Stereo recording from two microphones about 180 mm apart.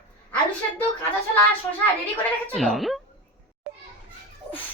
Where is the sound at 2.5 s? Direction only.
Centre (ahead or behind).